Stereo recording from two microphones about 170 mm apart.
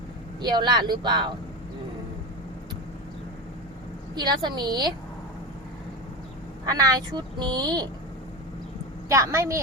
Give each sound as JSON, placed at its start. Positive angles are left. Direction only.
{"t": 0.4, "sound": "speech", "side_deg": -25}
{"t": 4.1, "sound": "speech", "side_deg": -25}
{"t": 6.7, "sound": "speech", "side_deg": -20}
{"t": 9.0, "sound": "a woman's voice", "side_deg": -15}